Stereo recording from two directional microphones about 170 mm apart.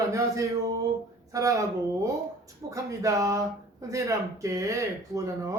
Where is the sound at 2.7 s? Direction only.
20° right (ahead or behind).